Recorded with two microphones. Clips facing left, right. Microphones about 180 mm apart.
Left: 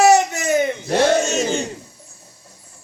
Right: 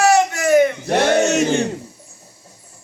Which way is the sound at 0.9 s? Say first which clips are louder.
Right 1 dB; 65° right (ahead or behind).